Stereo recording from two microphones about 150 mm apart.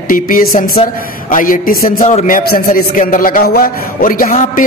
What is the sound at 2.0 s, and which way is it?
A man's voice, 55° left (ahead or behind).